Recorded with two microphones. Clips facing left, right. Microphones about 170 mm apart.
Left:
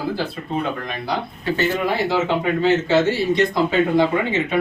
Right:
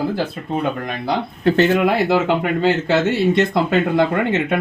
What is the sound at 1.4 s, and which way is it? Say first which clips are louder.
Speech: right 7 dB; 60° right (ahead or behind).